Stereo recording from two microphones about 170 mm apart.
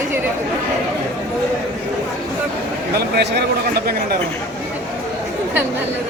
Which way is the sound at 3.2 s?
70° right (ahead or behind).